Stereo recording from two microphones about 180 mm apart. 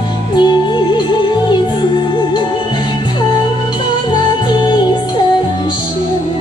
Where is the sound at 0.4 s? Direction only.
25° left (ahead or behind).